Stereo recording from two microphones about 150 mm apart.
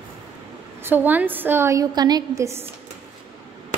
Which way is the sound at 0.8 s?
15° right (ahead or behind).